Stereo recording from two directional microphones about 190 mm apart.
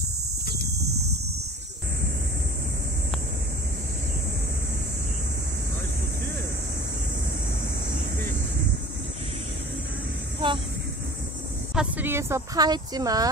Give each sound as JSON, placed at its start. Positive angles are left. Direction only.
{"t": 10.4, "sound": "speech", "side_deg": -25}
{"t": 11.7, "sound": "speech", "side_deg": -5}